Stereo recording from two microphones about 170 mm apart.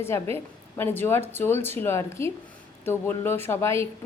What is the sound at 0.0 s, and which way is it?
A woman's voice, 15° left (ahead or behind).